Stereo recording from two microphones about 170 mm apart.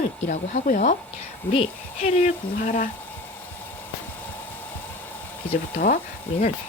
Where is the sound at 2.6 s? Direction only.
55° left (ahead or behind).